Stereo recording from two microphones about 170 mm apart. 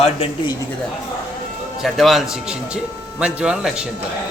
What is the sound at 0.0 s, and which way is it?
Speech, 35° left (ahead or behind).